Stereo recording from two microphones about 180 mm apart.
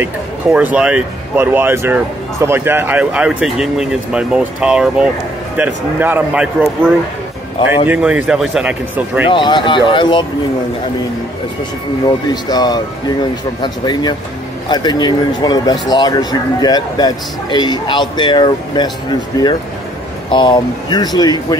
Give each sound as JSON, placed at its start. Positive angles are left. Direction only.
{"t": 0.0, "sound": "speech", "side_deg": -10}
{"t": 9.3, "sound": "speech", "side_deg": 25}
{"t": 12.4, "sound": "speech", "side_deg": 20}
{"t": 20.2, "sound": "speech", "side_deg": 25}